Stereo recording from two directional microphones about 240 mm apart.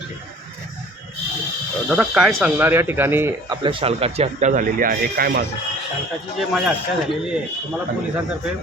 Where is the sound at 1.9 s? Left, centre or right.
Centre; by 5.5 s right.